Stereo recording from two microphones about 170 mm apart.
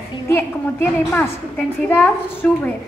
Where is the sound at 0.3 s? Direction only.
10° left (ahead or behind).